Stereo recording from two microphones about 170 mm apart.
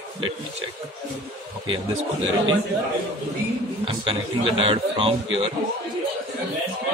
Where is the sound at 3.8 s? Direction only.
30° right (ahead or behind).